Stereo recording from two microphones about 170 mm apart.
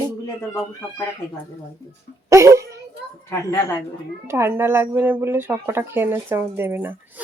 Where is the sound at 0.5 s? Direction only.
15° left (ahead or behind).